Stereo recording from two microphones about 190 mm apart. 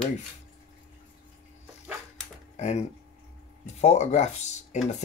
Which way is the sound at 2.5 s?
35° left (ahead or behind).